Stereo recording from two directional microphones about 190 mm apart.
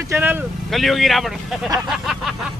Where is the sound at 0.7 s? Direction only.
Centre (ahead or behind).